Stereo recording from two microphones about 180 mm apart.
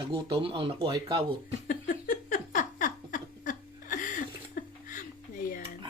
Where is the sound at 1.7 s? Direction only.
50° left (ahead or behind).